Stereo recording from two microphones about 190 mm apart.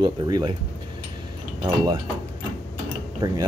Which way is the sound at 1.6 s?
20° right (ahead or behind).